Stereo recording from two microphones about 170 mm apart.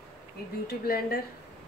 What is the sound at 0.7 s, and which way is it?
Speech, 60° left (ahead or behind).